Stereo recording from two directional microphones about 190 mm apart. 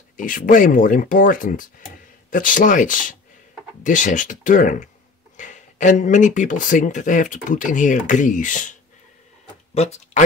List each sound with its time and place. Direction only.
0.2 s speech: 45° left (ahead or behind)
9.8 s speech: 35° left (ahead or behind)